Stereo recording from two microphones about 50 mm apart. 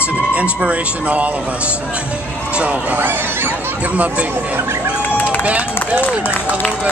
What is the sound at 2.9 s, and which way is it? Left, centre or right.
Speech, right.